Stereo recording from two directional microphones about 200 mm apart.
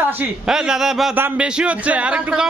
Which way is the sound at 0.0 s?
5° right (ahead or behind).